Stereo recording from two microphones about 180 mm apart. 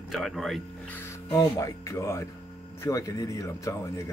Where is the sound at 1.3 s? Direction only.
20° left (ahead or behind).